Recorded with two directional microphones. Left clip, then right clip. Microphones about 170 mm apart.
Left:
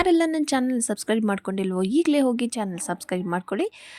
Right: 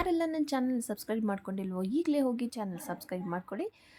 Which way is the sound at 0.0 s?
30° left (ahead or behind).